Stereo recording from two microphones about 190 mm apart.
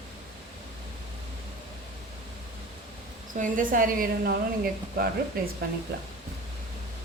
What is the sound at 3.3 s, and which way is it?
A woman's voice, 45° right (ahead or behind).